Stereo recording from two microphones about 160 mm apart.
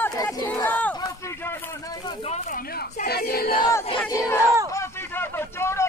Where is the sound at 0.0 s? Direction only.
20° left (ahead or behind).